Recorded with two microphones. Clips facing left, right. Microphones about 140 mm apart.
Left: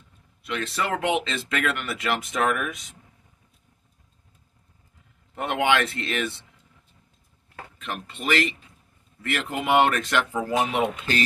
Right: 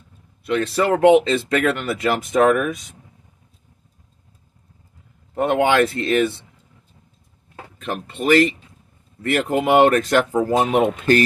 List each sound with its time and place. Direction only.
0.4 s speech: 40° right (ahead or behind)
5.3 s speech: 40° right (ahead or behind)
7.8 s speech: 40° right (ahead or behind)